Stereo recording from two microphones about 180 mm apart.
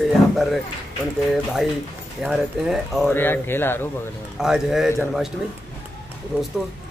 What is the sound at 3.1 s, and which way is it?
Speech, 10° left (ahead or behind).